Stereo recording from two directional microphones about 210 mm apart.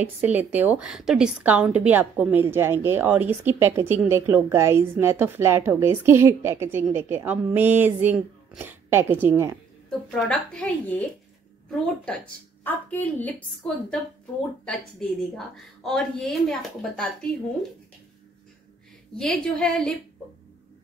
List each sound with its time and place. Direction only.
0.3 s a woman's voice: 10° right (ahead or behind)
9.8 s a woman's voice: 5° left (ahead or behind)
19.1 s a woman's voice: 5° left (ahead or behind)